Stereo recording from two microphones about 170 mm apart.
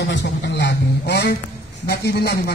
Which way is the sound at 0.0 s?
85° left.